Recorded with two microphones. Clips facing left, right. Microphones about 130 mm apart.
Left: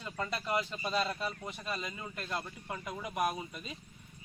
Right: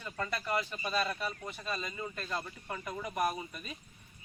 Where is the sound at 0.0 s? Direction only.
15° left (ahead or behind).